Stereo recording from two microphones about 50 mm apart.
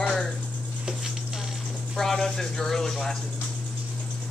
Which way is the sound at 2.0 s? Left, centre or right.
Centre.